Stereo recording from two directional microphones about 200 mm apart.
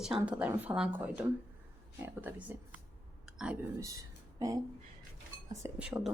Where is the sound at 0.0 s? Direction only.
5° right (ahead or behind).